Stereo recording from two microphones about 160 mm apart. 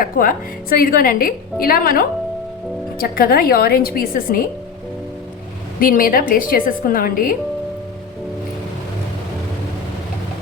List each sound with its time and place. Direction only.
0.0 s a woman's voice: 60° left (ahead or behind)
5.8 s a woman's voice: 60° left (ahead or behind)